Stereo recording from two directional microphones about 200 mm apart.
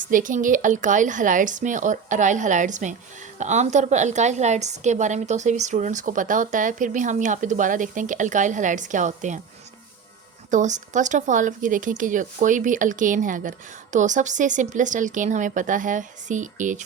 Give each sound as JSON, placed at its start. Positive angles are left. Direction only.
{"t": 0.0, "sound": "speech", "side_deg": -40}
{"t": 10.5, "sound": "speech", "side_deg": -35}